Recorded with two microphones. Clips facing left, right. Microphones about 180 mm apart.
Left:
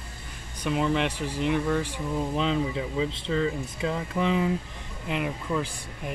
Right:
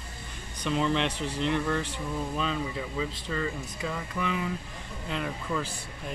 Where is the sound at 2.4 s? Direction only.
25° left (ahead or behind).